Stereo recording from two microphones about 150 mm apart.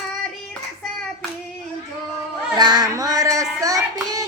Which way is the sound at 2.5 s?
30° right (ahead or behind).